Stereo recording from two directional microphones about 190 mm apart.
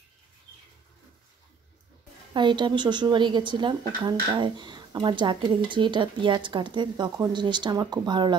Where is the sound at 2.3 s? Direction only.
25° right (ahead or behind).